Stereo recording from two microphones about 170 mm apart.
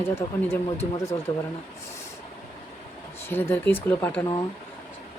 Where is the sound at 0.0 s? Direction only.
15° left (ahead or behind).